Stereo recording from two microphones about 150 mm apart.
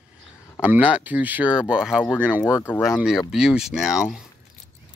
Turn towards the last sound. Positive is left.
turn(degrees=-5)  # may be behind; listen again after turning